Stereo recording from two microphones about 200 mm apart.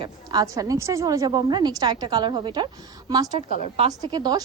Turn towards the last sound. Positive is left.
turn(degrees=-20)  # may be behind; listen again after turning